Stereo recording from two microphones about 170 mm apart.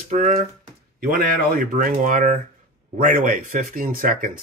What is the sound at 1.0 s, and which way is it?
Speech, 55° right (ahead or behind).